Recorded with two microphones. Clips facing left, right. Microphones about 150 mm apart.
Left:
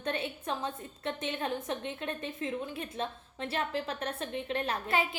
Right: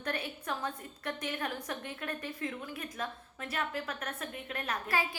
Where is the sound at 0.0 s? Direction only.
25° left (ahead or behind).